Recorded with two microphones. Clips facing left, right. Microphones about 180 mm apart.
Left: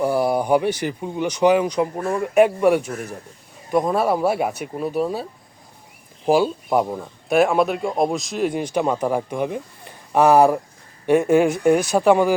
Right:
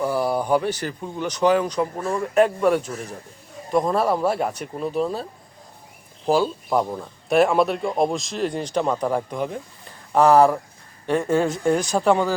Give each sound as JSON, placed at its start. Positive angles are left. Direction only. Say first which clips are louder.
{"t": 0.0, "sound": "speech", "louder": "left 3 dB", "side_deg": 15}
{"t": 2.9, "sound": "a man's voice", "louder": "left 2 dB", "side_deg": 55}
{"t": 3.7, "sound": "speech", "louder": "left 1 dB", "side_deg": 0}
{"t": 6.2, "sound": "speech", "louder": "left 3 dB", "side_deg": 10}